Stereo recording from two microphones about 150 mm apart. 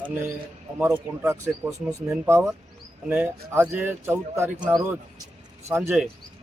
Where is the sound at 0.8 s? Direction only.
15° right (ahead or behind).